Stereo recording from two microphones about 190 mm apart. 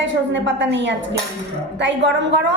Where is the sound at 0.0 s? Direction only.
70° right (ahead or behind).